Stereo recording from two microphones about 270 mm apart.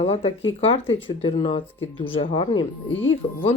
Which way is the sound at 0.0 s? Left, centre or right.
Left.